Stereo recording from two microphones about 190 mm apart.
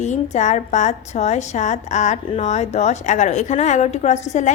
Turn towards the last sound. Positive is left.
turn(degrees=40)  # may be behind; listen again after turning